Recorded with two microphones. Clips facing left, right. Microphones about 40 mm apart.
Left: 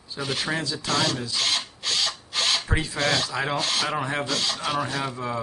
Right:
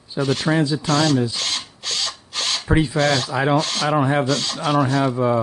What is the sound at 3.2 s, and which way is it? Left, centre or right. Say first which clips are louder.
Speech: right 7 dB; centre.